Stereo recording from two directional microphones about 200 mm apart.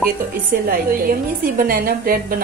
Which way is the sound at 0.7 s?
45° right (ahead or behind).